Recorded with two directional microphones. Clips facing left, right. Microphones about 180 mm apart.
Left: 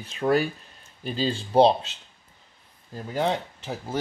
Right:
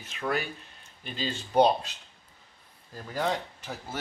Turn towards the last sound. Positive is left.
turn(degrees=30)  # may be behind; listen again after turning